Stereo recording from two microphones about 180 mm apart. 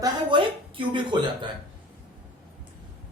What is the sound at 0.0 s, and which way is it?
A woman's voice, 25° right (ahead or behind).